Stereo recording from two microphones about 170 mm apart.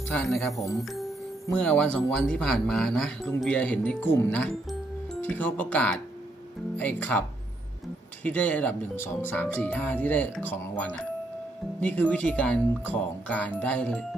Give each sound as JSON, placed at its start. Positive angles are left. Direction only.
{"t": 0.1, "sound": "speech", "side_deg": 5}
{"t": 0.6, "sound": "speech", "side_deg": 20}
{"t": 0.9, "sound": "speech", "side_deg": 0}